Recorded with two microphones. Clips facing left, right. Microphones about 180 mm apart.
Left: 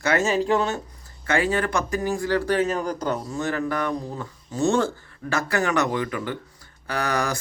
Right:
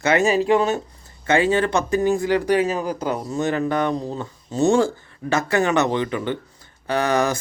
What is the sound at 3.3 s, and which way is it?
Speech, 20° right (ahead or behind).